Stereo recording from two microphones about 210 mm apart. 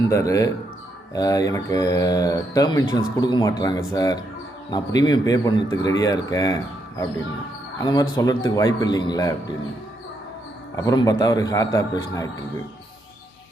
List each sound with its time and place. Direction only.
0.1 s speech: 15° left (ahead or behind)
10.8 s speech: 15° left (ahead or behind)